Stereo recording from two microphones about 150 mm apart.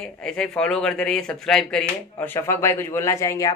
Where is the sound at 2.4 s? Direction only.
20° left (ahead or behind).